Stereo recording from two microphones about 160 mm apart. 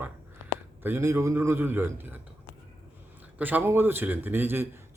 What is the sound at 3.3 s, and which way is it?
A man's voice, 10° right (ahead or behind).